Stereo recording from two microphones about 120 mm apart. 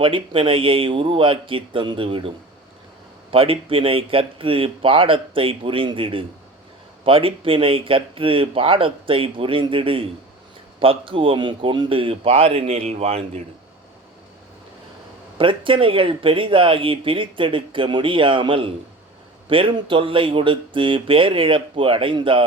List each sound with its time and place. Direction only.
0.0 s speech: 45° right (ahead or behind)
3.3 s speech: 50° right (ahead or behind)
15.4 s speech: 45° right (ahead or behind)